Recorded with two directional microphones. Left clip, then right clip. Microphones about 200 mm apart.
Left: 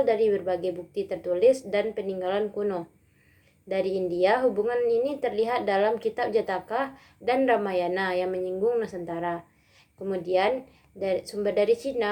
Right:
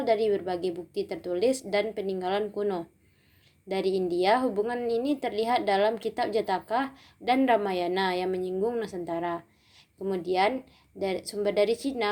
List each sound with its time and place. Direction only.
0.0 s a woman's voice: 30° right (ahead or behind)